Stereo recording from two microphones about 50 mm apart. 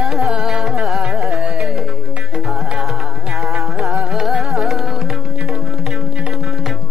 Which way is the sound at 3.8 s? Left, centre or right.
Right.